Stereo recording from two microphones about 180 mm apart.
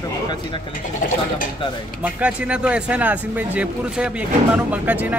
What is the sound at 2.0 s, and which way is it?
Speech, 5° right (ahead or behind).